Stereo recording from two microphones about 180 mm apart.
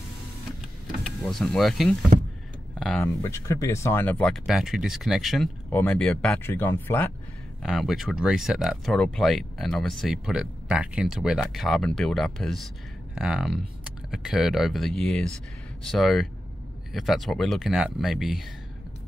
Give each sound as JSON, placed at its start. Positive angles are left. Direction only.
{"t": 0.5, "sound": "power windows", "side_deg": 0}
{"t": 3.0, "sound": "speech", "side_deg": 15}
{"t": 5.7, "sound": "speech", "side_deg": 10}
{"t": 7.6, "sound": "speech", "side_deg": 0}